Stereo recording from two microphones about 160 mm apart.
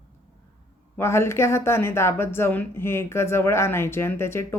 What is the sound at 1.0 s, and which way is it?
Speech, 15° left (ahead or behind).